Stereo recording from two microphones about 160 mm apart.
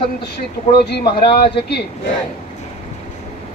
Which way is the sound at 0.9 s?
85° left.